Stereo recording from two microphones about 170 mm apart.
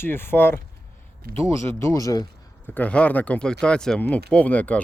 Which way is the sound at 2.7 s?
10° left (ahead or behind).